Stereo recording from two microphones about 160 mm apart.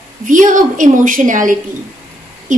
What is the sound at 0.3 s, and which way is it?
A woman's voice, 55° right (ahead or behind).